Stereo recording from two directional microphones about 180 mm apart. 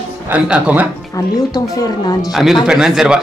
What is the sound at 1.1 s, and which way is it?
Speech, 20° left (ahead or behind).